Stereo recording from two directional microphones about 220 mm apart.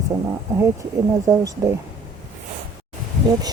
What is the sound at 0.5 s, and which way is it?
Speech, 15° right (ahead or behind).